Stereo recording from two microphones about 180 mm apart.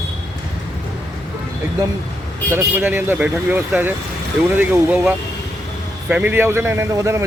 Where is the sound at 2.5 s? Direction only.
10° right (ahead or behind).